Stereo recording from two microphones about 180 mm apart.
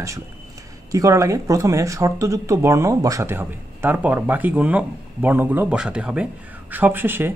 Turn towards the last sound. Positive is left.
turn(degrees=-10)  # may be behind; listen again after turning